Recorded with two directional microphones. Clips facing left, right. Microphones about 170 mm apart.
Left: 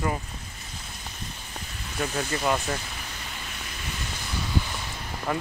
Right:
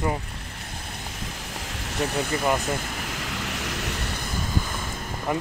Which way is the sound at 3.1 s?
90° right.